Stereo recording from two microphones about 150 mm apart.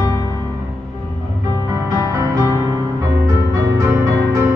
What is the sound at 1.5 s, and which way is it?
Music, 20° right (ahead or behind).